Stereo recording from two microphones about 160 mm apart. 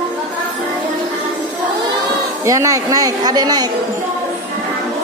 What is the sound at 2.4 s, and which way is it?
A woman's voice, 20° right (ahead or behind).